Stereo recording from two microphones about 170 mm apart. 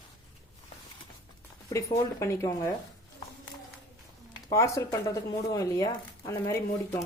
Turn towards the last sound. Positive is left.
turn(degrees=15)  # may be behind; listen again after turning